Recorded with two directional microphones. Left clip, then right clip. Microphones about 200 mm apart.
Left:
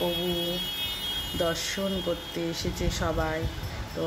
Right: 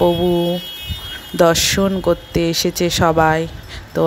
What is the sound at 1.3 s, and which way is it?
Speech, 50° right (ahead or behind).